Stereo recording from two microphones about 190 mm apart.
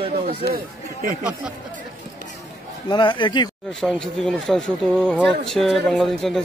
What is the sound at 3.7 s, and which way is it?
Speech, 5° left (ahead or behind).